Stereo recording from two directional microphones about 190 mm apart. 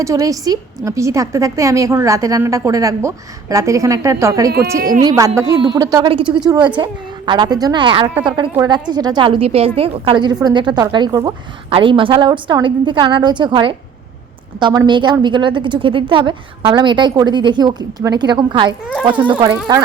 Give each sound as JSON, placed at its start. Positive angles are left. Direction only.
{"t": 0.0, "sound": "a woman's voice", "side_deg": -15}